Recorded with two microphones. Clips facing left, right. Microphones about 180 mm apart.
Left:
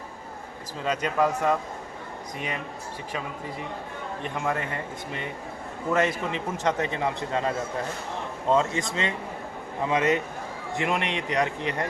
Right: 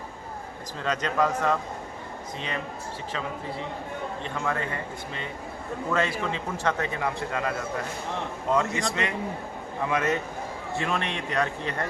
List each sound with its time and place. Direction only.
0.9 s a man's voice: 10° left (ahead or behind)
4.2 s a man's voice: 15° left (ahead or behind)
5.9 s a man's voice: 20° left (ahead or behind)
8.5 s a man's voice: 25° left (ahead or behind)